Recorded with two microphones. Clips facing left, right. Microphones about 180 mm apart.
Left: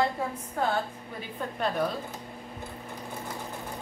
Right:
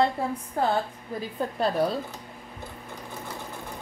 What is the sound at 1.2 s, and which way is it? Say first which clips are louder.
Speech: right 4 dB; 35° right (ahead or behind).